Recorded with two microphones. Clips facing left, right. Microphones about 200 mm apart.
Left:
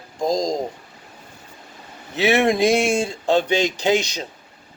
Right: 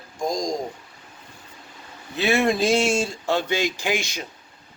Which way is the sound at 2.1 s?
80° left.